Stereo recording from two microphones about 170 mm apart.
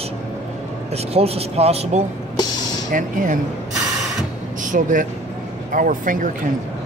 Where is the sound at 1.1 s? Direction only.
35° right (ahead or behind).